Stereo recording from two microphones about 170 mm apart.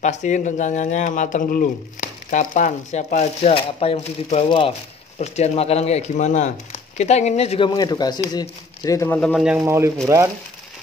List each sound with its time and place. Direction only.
0.0 s speech: 45° left (ahead or behind)
7.7 s speech: 25° left (ahead or behind); by 9.5 s 5° left (ahead or behind)
9.7 s speech: 15° right (ahead or behind)